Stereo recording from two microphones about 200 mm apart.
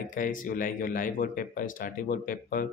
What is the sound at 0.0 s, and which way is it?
A man's voice, 40° left (ahead or behind).